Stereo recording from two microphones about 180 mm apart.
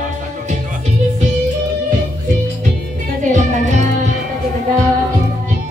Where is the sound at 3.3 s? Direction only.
40° right (ahead or behind).